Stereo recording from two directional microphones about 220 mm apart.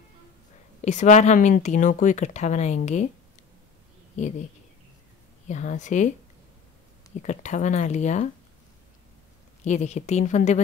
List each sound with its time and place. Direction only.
0.8 s speech: 30° left (ahead or behind)
5.5 s speech: 35° left (ahead or behind)
7.2 s speech: 30° left (ahead or behind)
9.7 s speech: 30° left (ahead or behind)